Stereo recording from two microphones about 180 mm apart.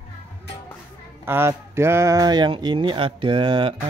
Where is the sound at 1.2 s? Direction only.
15° right (ahead or behind).